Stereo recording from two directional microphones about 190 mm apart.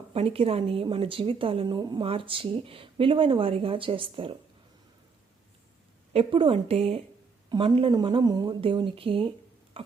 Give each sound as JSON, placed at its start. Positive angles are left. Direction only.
{"t": 0.1, "sound": "a woman's voice", "side_deg": -30}
{"t": 6.1, "sound": "a woman's voice", "side_deg": -25}
{"t": 9.7, "sound": "a sound", "side_deg": -30}